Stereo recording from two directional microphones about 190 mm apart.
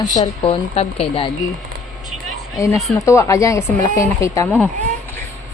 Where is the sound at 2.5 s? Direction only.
15° left (ahead or behind).